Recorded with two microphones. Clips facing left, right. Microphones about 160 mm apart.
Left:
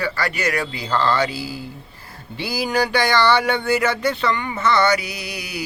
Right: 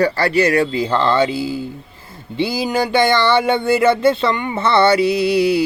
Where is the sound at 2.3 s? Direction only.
25° right (ahead or behind).